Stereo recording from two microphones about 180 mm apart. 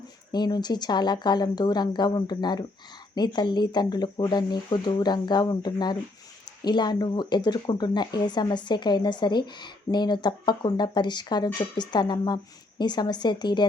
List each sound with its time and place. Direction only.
0.3 s speech: 25° left (ahead or behind)